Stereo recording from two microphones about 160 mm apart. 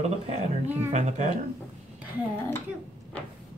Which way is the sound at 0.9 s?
45° right (ahead or behind).